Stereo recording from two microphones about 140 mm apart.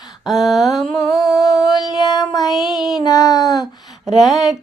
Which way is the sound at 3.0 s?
25° left (ahead or behind).